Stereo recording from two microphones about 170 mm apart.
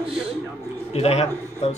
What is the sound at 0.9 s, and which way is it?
Speech, 40° left (ahead or behind).